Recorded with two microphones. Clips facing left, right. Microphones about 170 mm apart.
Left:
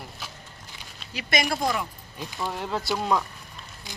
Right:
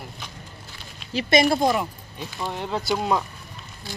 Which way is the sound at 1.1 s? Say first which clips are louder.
Right 8 dB; 25° right (ahead or behind).